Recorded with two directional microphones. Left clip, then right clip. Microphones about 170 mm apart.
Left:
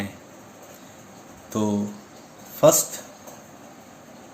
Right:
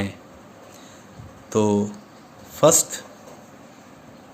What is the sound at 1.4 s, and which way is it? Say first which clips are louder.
Speech: right 6 dB; 80° right.